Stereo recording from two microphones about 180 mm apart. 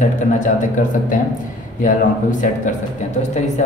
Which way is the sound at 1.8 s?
45° left (ahead or behind).